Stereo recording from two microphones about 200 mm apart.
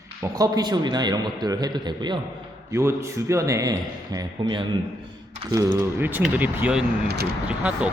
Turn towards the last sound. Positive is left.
turn(degrees=-5)  # may be behind; listen again after turning